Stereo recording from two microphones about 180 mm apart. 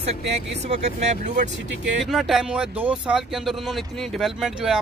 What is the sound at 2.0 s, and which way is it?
Speech, centre (ahead or behind).